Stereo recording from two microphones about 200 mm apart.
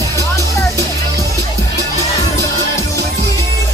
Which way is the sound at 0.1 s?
15° left (ahead or behind).